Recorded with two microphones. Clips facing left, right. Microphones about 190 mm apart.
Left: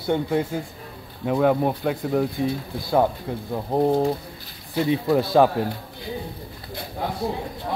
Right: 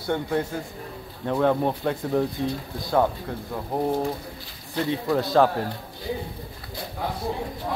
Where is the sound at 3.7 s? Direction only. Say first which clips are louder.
Left 5 dB; 20° left (ahead or behind).